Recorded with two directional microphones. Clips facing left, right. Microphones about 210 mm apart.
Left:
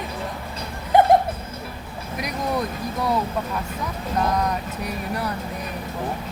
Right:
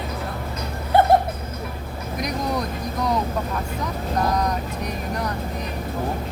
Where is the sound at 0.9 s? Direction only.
15° left (ahead or behind).